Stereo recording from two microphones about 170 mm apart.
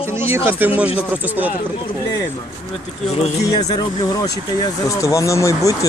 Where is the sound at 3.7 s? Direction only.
20° left (ahead or behind).